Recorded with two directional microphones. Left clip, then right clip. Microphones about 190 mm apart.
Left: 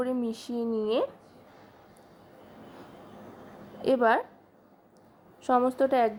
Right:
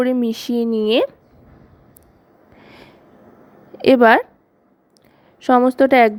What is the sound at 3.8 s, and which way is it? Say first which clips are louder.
Speech: right 12 dB; 45° right (ahead or behind).